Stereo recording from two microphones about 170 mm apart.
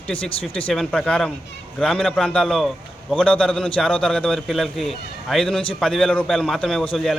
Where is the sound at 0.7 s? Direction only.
5° left (ahead or behind).